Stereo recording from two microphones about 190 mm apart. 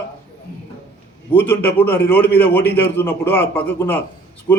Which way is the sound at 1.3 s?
10° left (ahead or behind).